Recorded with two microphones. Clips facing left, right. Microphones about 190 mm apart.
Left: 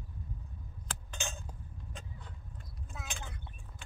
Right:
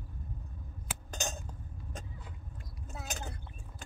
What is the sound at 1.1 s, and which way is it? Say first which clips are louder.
Chink: right 4 dB; 40° right (ahead or behind).